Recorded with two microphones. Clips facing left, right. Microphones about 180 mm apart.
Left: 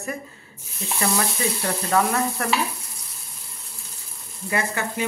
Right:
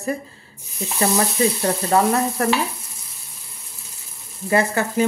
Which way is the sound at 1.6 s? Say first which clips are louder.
Right 1 dB; 30° right (ahead or behind).